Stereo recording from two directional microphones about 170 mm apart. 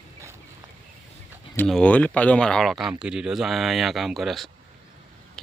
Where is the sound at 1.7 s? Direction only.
5° left (ahead or behind).